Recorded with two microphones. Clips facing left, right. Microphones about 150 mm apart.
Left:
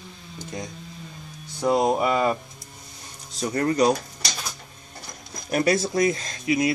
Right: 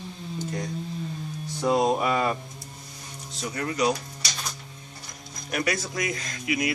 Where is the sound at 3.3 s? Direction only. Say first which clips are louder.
Left 6 dB; 40° left (ahead or behind).